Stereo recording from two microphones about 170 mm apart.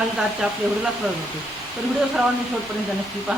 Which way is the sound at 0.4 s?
5° right (ahead or behind).